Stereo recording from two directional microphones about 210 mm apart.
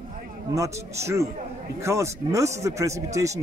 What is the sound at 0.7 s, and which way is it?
A man's voice, 15° right (ahead or behind).